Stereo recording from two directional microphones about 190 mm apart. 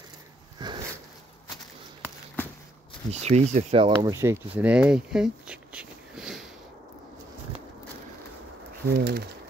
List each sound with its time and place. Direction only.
0.6 s a sound: 20° right (ahead or behind)
3.1 s speech: 35° right (ahead or behind)
4.1 s speech: 15° right (ahead or behind)
8.9 s speech: 55° right (ahead or behind)